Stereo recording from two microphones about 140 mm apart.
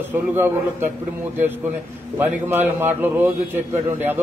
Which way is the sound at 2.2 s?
15° right (ahead or behind).